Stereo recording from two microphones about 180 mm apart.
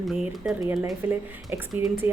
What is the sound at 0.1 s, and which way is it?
A woman's voice, 5° right (ahead or behind).